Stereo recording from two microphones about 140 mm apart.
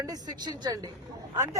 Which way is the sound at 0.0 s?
25° right (ahead or behind).